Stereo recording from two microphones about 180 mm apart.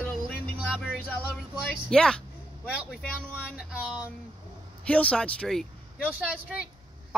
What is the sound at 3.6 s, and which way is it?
Speech, 5° right (ahead or behind).